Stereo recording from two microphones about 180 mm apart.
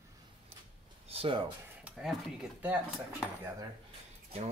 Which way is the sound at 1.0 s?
30° right (ahead or behind).